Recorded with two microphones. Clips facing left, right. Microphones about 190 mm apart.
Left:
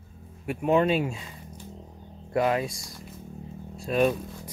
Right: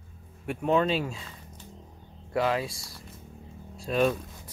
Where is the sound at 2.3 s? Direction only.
15° left (ahead or behind).